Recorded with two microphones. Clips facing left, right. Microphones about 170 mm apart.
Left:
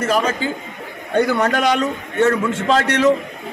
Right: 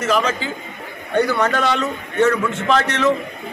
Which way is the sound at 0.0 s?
50° left (ahead or behind).